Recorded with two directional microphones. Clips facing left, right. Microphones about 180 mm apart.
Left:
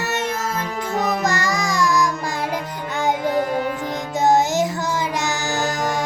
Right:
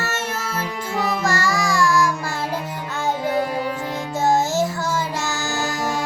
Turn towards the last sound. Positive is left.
turn(degrees=15)  # may be behind; listen again after turning